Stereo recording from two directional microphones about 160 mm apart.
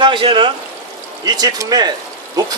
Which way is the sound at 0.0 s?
30° right (ahead or behind).